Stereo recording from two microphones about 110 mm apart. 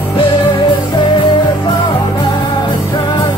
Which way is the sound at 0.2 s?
45° left (ahead or behind).